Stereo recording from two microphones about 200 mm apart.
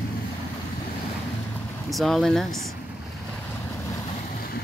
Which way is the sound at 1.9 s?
Centre (ahead or behind).